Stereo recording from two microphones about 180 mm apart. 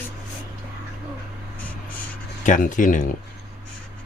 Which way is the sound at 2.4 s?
45° left (ahead or behind).